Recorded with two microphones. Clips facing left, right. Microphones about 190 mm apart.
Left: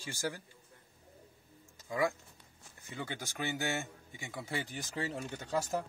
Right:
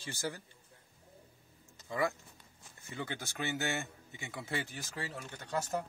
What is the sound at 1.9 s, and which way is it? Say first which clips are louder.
Speech: left 1 dB; 10° left (ahead or behind).